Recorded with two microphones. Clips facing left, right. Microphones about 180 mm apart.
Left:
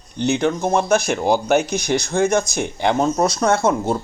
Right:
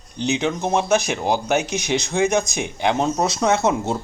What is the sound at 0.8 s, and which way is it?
Speech, centre (ahead or behind).